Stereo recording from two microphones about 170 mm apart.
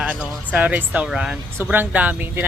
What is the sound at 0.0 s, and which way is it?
Speech, 5° right (ahead or behind).